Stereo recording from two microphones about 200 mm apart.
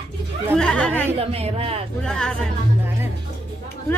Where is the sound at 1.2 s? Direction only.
30° right (ahead or behind).